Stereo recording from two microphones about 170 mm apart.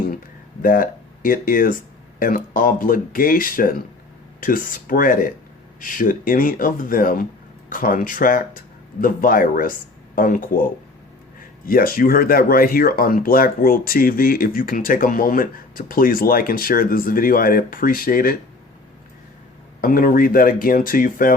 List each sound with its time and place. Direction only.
0.6 s speech: 55° left (ahead or behind)
19.8 s speech: 55° left (ahead or behind)